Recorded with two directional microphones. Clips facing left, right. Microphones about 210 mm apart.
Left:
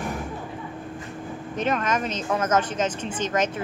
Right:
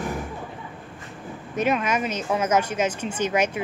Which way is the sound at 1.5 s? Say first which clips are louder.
Right 2 dB; 10° right (ahead or behind).